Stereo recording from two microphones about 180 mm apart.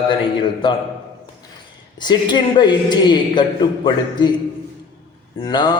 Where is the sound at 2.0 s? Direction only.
25° left (ahead or behind).